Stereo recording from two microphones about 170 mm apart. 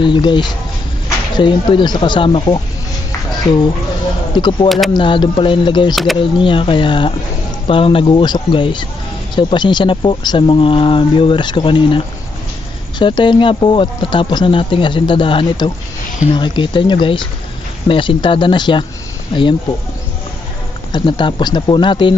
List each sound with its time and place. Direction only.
0.0 s speech: 30° left (ahead or behind)
4.4 s speech: 25° left (ahead or behind)
4.6 s speech: centre (ahead or behind)
4.9 s speech: 30° left (ahead or behind)
13.0 s speech: 25° left (ahead or behind)
20.9 s speech: 25° left (ahead or behind)